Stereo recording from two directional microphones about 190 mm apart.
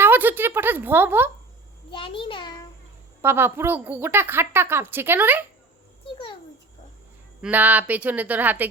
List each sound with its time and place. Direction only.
0.0 s a woman's voice: 10° right (ahead or behind)
1.9 s a child's voice: 25° left (ahead or behind)
3.2 s a woman's voice: 10° right (ahead or behind)
7.4 s a woman's voice: 10° right (ahead or behind)